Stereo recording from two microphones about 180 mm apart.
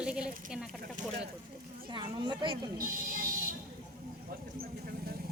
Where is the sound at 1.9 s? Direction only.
25° right (ahead or behind).